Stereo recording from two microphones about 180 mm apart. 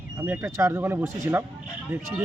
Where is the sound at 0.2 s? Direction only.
15° right (ahead or behind).